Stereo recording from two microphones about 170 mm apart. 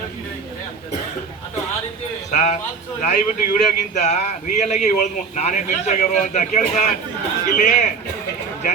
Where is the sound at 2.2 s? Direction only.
45° left (ahead or behind).